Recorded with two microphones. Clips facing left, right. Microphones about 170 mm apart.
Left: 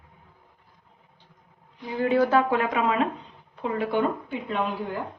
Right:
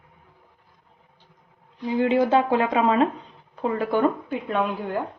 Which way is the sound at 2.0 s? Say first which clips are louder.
Right 1 dB; 20° right (ahead or behind).